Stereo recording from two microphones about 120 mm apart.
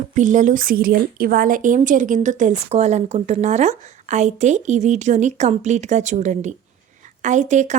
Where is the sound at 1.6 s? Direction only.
90° right.